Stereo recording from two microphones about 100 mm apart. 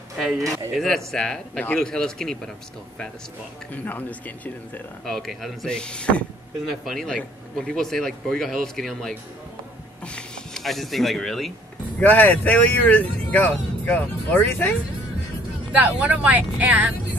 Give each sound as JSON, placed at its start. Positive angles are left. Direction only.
{"t": 0.7, "sound": "speech", "side_deg": 5}
{"t": 3.8, "sound": "speech", "side_deg": 20}
{"t": 5.0, "sound": "speech", "side_deg": 5}
{"t": 6.6, "sound": "speech", "side_deg": 0}
{"t": 7.1, "sound": "speech", "side_deg": 10}
{"t": 12.0, "sound": "speech", "side_deg": 20}
{"t": 15.7, "sound": "speech", "side_deg": -15}